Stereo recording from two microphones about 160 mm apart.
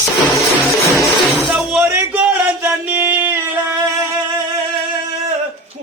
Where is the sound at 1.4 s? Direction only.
Centre (ahead or behind).